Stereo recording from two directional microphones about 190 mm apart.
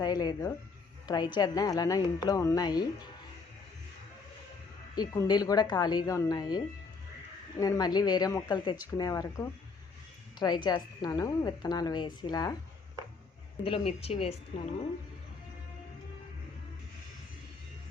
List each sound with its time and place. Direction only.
0.0 s a woman's voice: 20° left (ahead or behind)
4.9 s a woman's voice: 20° left (ahead or behind)
7.6 s a woman's voice: 20° left (ahead or behind)
13.7 s speech: 30° left (ahead or behind)